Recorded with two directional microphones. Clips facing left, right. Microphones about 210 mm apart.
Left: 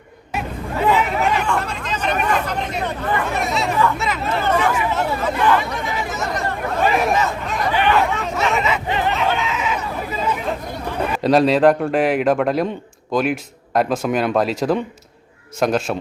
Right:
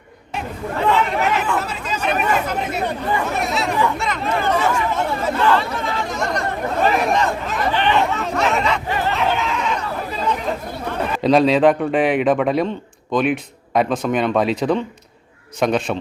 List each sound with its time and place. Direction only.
0.3 s chatter: 10° left (ahead or behind); by 3.2 s 10° right (ahead or behind)
3.3 s speech: centre (ahead or behind)
4.7 s chatter: 10° left (ahead or behind)
5.4 s speech: 15° left (ahead or behind)
8.9 s speech: 20° left (ahead or behind)
9.1 s chatter: centre (ahead or behind)
11.1 s speech: centre (ahead or behind)